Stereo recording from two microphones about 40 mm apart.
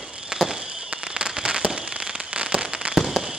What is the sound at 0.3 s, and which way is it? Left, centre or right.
Fireworks, right.